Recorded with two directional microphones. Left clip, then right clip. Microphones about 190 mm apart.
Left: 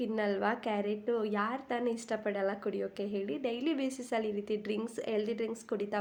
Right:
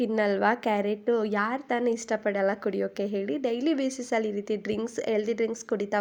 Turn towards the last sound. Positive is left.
turn(degrees=-35)  # may be behind; listen again after turning